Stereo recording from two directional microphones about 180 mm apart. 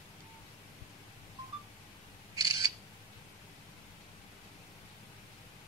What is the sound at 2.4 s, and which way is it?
Camera, 20° right (ahead or behind).